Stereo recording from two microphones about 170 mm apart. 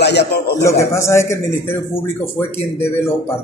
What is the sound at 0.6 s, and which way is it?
Speech, 15° left (ahead or behind).